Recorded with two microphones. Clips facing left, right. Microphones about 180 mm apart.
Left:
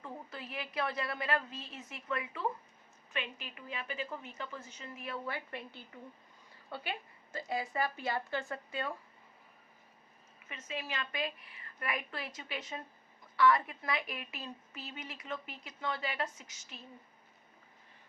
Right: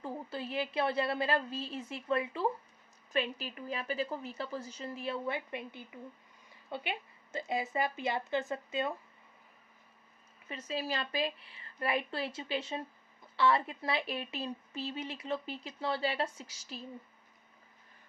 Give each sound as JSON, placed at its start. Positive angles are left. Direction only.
{"t": 0.0, "sound": "a woman's voice", "side_deg": -30}
{"t": 10.5, "sound": "a woman's voice", "side_deg": -35}